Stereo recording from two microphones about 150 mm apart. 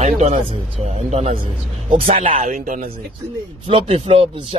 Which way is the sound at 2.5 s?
60° right (ahead or behind).